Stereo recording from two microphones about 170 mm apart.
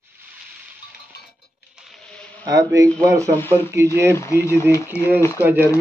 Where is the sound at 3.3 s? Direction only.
15° left (ahead or behind).